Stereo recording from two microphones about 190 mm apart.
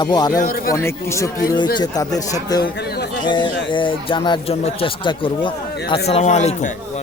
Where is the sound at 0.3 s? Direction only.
50° left (ahead or behind).